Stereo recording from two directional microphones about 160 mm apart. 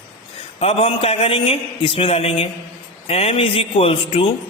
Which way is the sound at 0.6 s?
35° left (ahead or behind).